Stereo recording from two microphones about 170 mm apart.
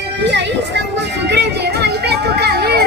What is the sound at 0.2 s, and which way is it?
Music, 90° right.